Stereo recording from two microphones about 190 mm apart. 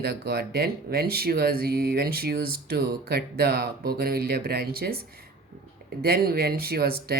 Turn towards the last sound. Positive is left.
turn(degrees=-55)  # may be behind; listen again after turning